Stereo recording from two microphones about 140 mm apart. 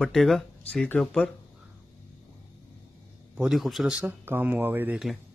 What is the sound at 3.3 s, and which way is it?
Speech, 5° right (ahead or behind).